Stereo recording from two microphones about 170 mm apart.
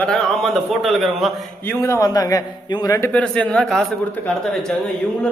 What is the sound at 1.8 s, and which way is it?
Speech, 20° left (ahead or behind).